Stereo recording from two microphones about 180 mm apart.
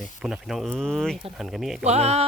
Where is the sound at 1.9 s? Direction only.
35° right (ahead or behind).